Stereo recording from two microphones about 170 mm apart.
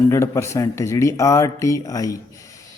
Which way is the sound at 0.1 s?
15° left (ahead or behind).